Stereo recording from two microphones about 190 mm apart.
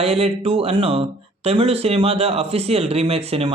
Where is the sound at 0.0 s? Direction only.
35° right (ahead or behind).